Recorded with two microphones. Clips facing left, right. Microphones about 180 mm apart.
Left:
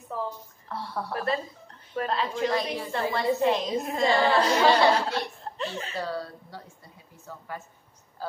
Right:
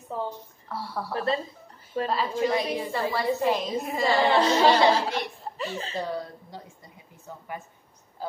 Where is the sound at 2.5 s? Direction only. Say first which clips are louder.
Right 1 dB; 15° right (ahead or behind).